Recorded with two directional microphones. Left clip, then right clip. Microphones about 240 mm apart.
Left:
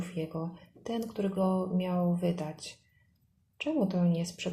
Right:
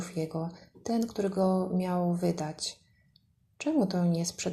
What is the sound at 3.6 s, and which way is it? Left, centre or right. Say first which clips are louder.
Speech: right 2 dB; centre.